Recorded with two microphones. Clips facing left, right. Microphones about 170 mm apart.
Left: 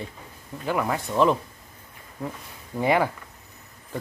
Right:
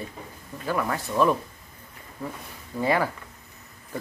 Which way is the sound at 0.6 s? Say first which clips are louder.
Left 1 dB; 15° left (ahead or behind).